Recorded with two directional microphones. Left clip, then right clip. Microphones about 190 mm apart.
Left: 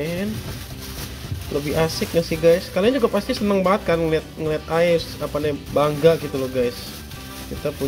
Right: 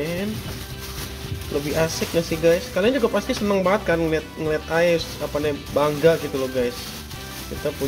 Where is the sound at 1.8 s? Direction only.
25° left (ahead or behind).